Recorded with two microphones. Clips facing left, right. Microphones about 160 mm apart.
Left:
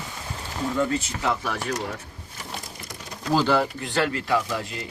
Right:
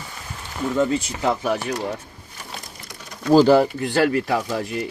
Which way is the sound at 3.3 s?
35° right (ahead or behind).